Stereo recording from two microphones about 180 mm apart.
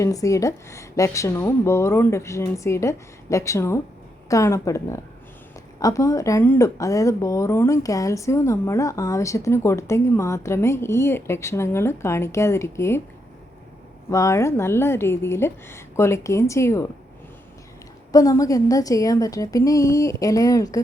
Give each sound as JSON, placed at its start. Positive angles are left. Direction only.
{"t": 0.0, "sound": "a woman's voice", "side_deg": 20}
{"t": 14.1, "sound": "a woman's voice", "side_deg": 15}
{"t": 18.1, "sound": "a woman's voice", "side_deg": 20}